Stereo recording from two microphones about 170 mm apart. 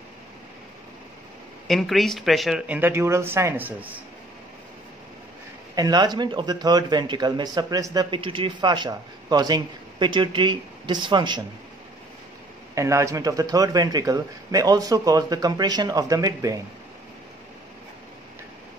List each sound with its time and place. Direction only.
1.7 s speech: centre (ahead or behind)
5.8 s a man's voice: 25° right (ahead or behind)
12.7 s a man's voice: 15° right (ahead or behind)